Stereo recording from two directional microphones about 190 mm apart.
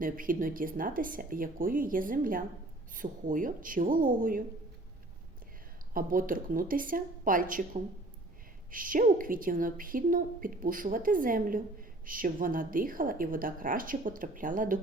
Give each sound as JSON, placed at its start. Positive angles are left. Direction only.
{"t": 0.0, "sound": "a woman's voice", "side_deg": -45}
{"t": 5.9, "sound": "a woman's voice", "side_deg": -45}